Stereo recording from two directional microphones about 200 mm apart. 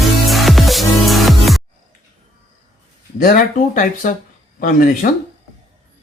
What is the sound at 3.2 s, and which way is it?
Speech, 45° left (ahead or behind).